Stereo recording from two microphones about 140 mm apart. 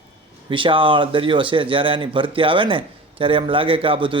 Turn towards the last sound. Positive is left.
turn(degrees=-40)  # may be behind; listen again after turning